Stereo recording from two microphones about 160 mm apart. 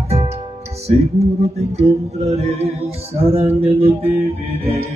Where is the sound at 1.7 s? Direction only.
40° right (ahead or behind).